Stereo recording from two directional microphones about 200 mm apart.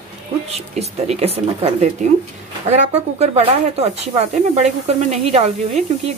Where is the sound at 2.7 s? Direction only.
35° right (ahead or behind).